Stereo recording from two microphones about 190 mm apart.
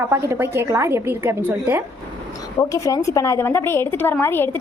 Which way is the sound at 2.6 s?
15° left (ahead or behind).